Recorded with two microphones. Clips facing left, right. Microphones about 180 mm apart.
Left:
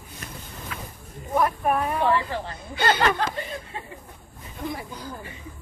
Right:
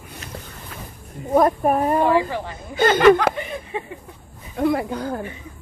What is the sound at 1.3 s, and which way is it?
Speech, 40° right (ahead or behind).